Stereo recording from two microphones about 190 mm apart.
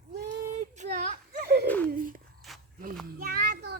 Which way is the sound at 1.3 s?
50° right (ahead or behind).